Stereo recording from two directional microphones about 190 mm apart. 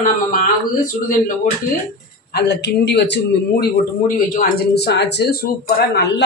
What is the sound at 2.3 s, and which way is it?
Speech, 60° left (ahead or behind).